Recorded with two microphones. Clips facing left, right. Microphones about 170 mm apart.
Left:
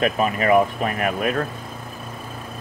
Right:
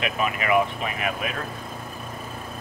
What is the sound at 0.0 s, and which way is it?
Speech, 40° left (ahead or behind).